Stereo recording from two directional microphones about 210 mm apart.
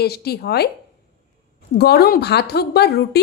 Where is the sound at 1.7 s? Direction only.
50° left (ahead or behind).